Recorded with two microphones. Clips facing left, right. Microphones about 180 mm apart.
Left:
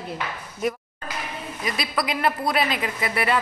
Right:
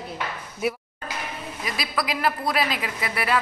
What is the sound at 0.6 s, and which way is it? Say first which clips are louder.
A man's voice: even; 5° right (ahead or behind).